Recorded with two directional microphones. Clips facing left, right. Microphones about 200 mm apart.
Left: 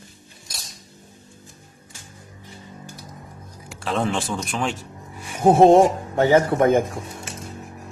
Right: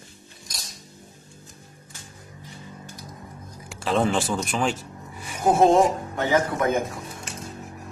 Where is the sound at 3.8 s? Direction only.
Centre (ahead or behind).